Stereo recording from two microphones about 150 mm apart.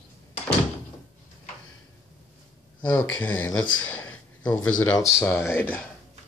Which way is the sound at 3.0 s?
15° left (ahead or behind).